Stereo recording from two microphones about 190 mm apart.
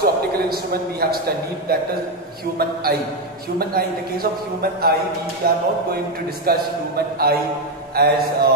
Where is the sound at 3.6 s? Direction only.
55° right (ahead or behind).